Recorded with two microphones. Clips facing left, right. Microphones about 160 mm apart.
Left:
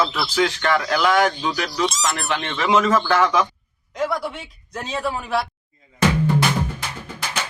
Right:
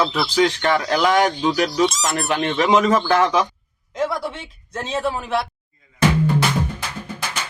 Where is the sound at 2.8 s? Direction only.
15° right (ahead or behind).